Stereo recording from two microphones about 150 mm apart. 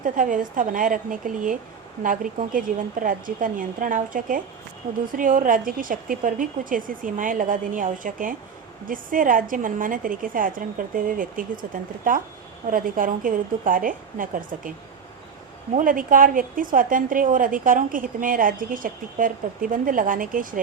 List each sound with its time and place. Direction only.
0.0 s a woman's voice: 65° right (ahead or behind)
15.7 s a woman's voice: 65° right (ahead or behind)